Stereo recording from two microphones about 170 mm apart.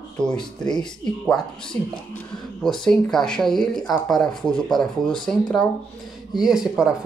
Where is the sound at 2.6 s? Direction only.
5° left (ahead or behind).